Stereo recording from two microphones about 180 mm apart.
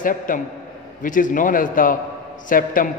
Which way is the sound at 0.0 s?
50° left (ahead or behind).